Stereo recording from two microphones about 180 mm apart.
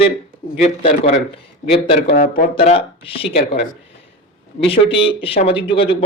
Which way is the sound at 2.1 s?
50° left (ahead or behind).